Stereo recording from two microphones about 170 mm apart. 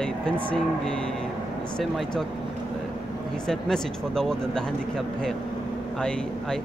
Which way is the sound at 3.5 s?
5° left (ahead or behind).